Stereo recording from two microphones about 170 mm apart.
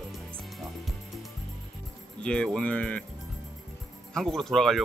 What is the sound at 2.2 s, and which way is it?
Speech, 5° left (ahead or behind).